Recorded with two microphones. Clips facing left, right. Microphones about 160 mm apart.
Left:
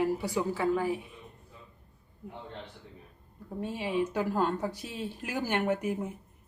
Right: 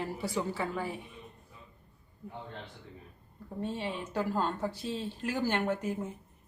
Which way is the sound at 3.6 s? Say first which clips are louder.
Left 5 dB; 10° left (ahead or behind).